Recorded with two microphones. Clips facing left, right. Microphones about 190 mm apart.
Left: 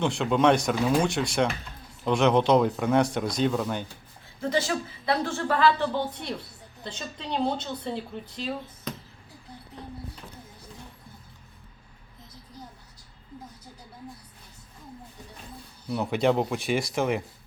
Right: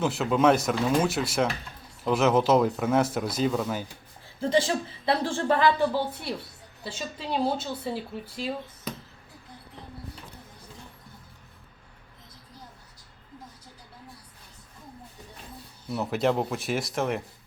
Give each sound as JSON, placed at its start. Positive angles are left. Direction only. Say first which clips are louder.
{"t": 0.0, "sound": "speech", "louder": "even", "side_deg": -5}
{"t": 4.4, "sound": "speech", "louder": "right 2 dB", "side_deg": -30}
{"t": 5.9, "sound": "speech", "louder": "right 1 dB", "side_deg": -5}
{"t": 15.9, "sound": "speech", "louder": "left 2 dB", "side_deg": 0}